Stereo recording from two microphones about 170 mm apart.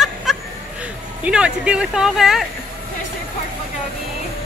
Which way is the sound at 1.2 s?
5° right (ahead or behind).